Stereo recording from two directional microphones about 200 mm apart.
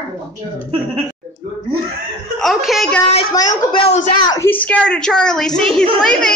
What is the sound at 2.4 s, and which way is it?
Chuckle, centre (ahead or behind).